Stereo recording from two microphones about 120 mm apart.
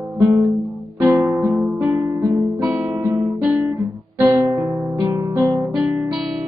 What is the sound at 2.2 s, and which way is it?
Guitar, 30° right (ahead or behind).